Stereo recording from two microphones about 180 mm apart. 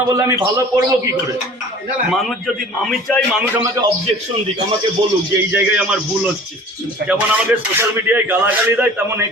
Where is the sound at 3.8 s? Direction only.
15° right (ahead or behind).